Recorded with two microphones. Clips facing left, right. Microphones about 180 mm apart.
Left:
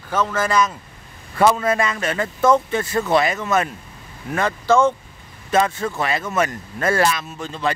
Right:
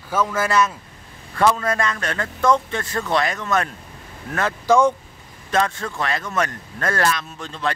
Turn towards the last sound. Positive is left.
turn(degrees=5)  # may be behind; listen again after turning